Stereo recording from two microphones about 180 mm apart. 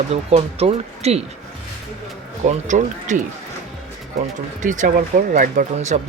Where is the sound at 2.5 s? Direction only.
40° right (ahead or behind).